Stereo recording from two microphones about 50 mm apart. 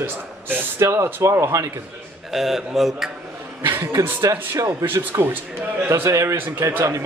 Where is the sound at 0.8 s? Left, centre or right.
Right.